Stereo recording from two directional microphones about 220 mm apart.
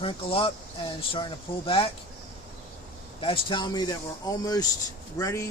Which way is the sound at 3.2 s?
25° left (ahead or behind).